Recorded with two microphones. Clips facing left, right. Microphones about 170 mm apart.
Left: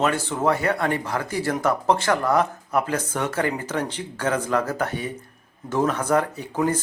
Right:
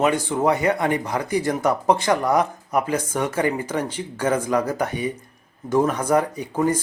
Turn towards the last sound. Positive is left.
turn(degrees=-10)  # may be behind; listen again after turning